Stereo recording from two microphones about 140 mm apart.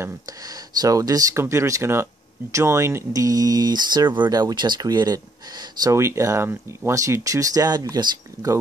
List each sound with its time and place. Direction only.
0.0 s speech: 25° right (ahead or behind)